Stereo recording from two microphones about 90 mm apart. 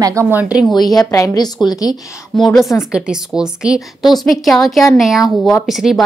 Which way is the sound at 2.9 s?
10° right (ahead or behind).